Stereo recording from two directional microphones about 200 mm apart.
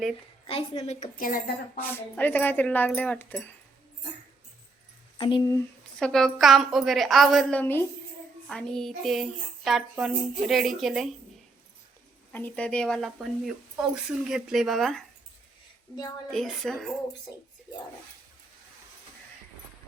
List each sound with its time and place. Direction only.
0.4 s a woman's voice: 30° left (ahead or behind); by 1.8 s 45° left (ahead or behind)
1.8 s speech: 10° left (ahead or behind)
5.1 s speech: 25° left (ahead or behind)
6.0 s speech: centre (ahead or behind)
12.3 s speech: 10° left (ahead or behind)
16.3 s speech: centre (ahead or behind)